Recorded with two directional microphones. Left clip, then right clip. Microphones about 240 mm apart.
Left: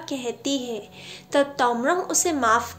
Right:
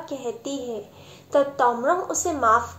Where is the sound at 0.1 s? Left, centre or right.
Left.